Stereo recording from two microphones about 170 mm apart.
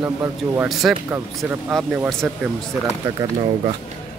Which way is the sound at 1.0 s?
10° right (ahead or behind).